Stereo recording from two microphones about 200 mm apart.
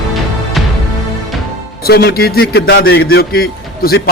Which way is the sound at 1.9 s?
50° left (ahead or behind).